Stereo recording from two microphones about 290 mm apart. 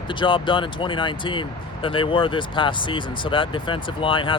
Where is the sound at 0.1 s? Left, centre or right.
Centre.